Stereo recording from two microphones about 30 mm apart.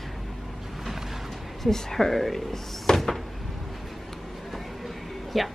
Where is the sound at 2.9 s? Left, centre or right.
Left.